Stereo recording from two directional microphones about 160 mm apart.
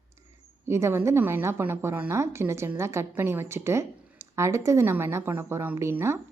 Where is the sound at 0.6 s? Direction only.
15° right (ahead or behind).